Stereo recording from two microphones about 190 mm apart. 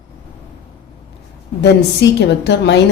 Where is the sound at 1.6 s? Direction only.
65° left (ahead or behind).